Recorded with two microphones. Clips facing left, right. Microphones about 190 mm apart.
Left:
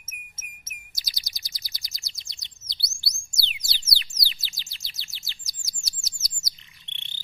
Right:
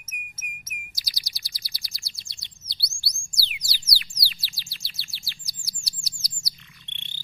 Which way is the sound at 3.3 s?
25° left (ahead or behind).